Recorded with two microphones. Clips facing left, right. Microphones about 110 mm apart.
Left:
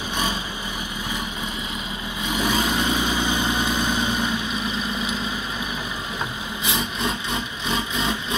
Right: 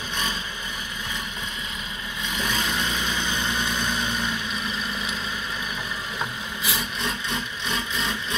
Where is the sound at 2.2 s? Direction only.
10° left (ahead or behind).